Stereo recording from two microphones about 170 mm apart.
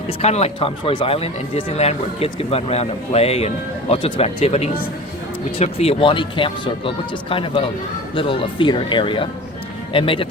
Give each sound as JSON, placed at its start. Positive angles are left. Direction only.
{"t": 0.2, "sound": "speech", "side_deg": 40}